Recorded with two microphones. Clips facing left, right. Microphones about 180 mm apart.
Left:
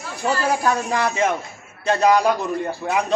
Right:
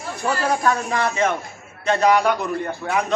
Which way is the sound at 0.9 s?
10° left (ahead or behind).